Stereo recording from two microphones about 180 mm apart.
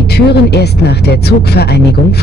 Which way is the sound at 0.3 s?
65° left (ahead or behind).